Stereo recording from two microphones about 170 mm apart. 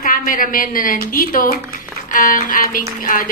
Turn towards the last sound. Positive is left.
turn(degrees=55)  # may be behind; listen again after turning